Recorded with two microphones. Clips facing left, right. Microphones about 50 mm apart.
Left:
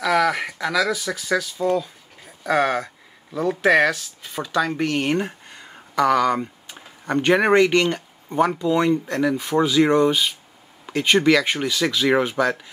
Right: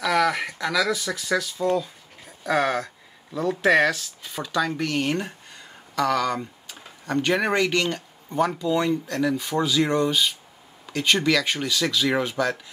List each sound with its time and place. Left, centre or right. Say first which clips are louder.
0.0 s speech: left 2 dB; centre